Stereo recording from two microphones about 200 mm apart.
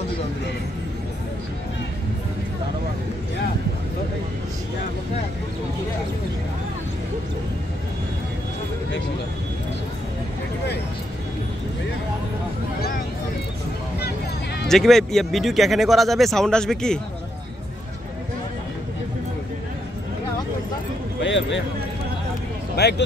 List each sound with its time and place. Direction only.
14.7 s speech: centre (ahead or behind)
21.2 s speech: 65° left (ahead or behind)
22.8 s speech: 55° left (ahead or behind)